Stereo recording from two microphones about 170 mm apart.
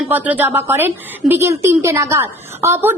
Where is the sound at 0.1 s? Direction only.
10° right (ahead or behind).